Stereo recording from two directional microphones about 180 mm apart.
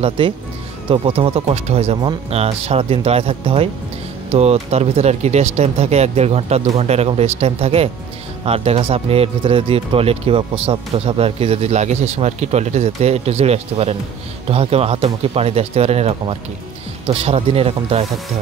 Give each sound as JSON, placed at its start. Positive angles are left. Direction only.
{"t": 0.2, "sound": "speech", "side_deg": -30}